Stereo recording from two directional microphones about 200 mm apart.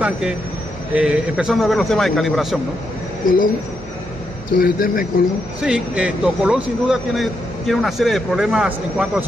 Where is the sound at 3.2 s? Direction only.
45° left (ahead or behind).